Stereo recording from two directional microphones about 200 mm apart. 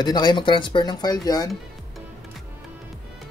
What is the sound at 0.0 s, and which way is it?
Speech, 20° left (ahead or behind).